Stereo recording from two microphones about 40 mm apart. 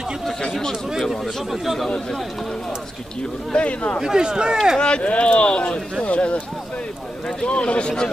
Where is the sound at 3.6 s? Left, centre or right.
Left.